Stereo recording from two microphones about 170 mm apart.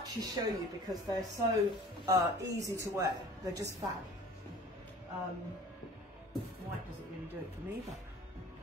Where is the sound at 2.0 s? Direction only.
20° right (ahead or behind).